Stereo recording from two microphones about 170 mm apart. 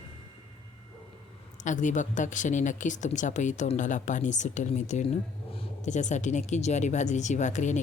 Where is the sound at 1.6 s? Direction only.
45° left (ahead or behind).